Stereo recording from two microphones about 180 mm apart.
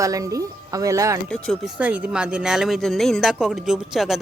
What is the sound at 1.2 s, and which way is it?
Speech, 5° left (ahead or behind).